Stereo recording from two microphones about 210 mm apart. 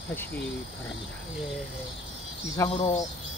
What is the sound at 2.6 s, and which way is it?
Speech, 30° left (ahead or behind).